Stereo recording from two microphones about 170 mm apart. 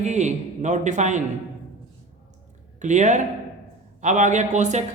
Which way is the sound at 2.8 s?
45° right (ahead or behind).